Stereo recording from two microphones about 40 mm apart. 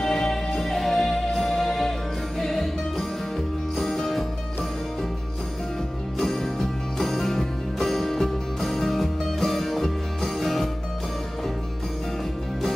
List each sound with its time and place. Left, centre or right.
0.0 s music: centre
6.1 s music: centre